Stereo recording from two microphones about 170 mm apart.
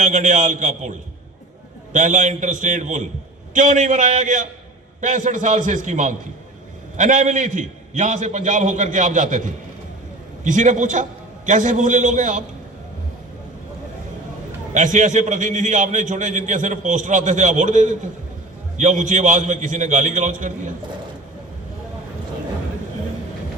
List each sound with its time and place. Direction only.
0.0 s a man's voice: 45° right (ahead or behind)
14.7 s a man's voice: 45° right (ahead or behind)